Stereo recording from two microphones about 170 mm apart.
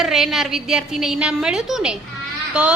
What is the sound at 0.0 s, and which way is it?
A woman's voice, centre (ahead or behind).